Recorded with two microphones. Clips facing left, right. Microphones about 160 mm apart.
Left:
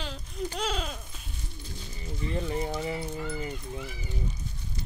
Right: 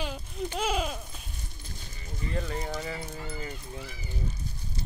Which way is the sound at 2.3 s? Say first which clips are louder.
Left 2 dB; 20° left (ahead or behind).